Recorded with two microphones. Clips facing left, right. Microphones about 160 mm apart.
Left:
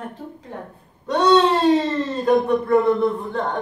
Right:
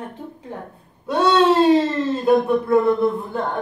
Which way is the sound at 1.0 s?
5° right (ahead or behind).